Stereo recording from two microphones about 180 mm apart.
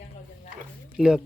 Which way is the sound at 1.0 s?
5° right (ahead or behind).